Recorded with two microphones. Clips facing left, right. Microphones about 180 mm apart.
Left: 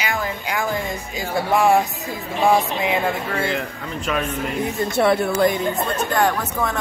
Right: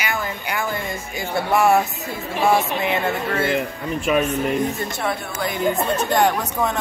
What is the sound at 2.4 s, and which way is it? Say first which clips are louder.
Speech: left 1 dB; 15° left (ahead or behind).